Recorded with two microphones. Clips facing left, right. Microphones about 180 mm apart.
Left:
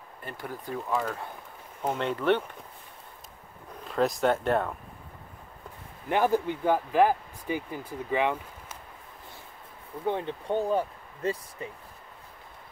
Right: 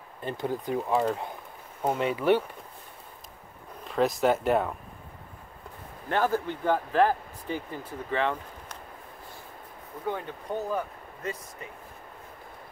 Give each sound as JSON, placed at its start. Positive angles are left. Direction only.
{"t": 0.2, "sound": "speech", "side_deg": -25}
{"t": 1.8, "sound": "speech", "side_deg": -10}
{"t": 3.8, "sound": "speech", "side_deg": 0}
{"t": 6.0, "sound": "speech", "side_deg": 15}
{"t": 10.0, "sound": "speech", "side_deg": 25}